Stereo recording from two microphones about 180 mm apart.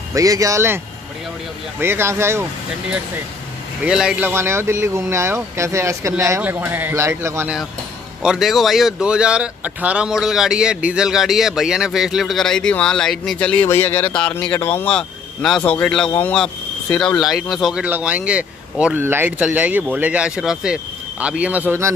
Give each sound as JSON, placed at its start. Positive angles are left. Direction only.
{"t": 0.1, "sound": "speech", "side_deg": -20}
{"t": 1.8, "sound": "speech", "side_deg": -15}
{"t": 3.8, "sound": "speech", "side_deg": -5}
{"t": 8.2, "sound": "speech", "side_deg": 0}